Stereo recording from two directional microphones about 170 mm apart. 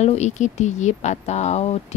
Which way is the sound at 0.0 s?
40° left (ahead or behind).